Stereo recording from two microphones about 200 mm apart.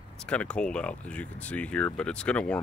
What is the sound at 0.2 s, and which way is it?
Speech, 5° left (ahead or behind).